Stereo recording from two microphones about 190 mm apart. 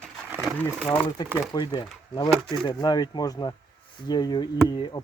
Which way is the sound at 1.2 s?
20° left (ahead or behind).